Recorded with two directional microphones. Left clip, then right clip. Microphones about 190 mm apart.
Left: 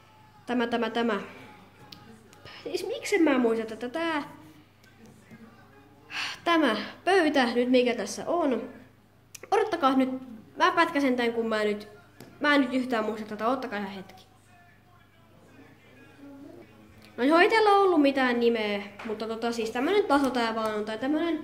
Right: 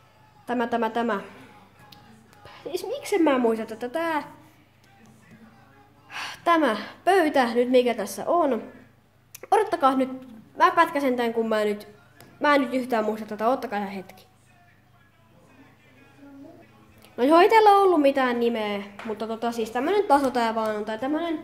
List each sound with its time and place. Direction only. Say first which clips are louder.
0.5 s a woman's voice: right 3 dB; 20° right (ahead or behind)
2.4 s a woman's voice: right 1 dB; 15° right (ahead or behind)
6.0 s a woman's voice: right 4 dB; 20° right (ahead or behind); by 14.2 s 35° right (ahead or behind)
17.1 s a woman's voice: right 5 dB; 30° right (ahead or behind)